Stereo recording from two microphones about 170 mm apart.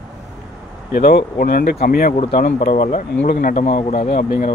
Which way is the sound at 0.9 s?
65° left (ahead or behind).